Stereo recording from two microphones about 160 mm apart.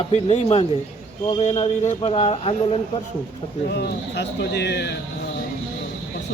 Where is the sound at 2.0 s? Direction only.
35° left (ahead or behind).